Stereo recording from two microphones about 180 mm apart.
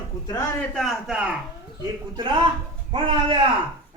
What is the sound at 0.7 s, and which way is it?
Speech, centre (ahead or behind).